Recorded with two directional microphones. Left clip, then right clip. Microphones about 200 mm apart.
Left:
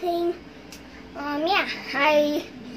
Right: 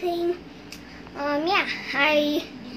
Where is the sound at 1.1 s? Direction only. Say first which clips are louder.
Right 4 dB; 15° right (ahead or behind).